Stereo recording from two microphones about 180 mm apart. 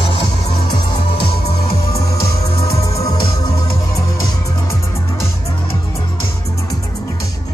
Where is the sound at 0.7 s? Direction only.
25° left (ahead or behind).